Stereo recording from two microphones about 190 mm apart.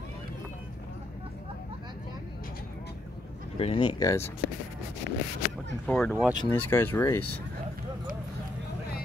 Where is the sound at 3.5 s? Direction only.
30° left (ahead or behind).